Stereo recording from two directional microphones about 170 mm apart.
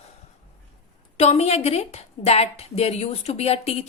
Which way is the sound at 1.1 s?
40° left (ahead or behind).